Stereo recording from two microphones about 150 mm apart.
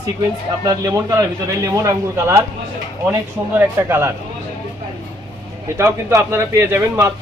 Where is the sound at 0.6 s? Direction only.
25° right (ahead or behind).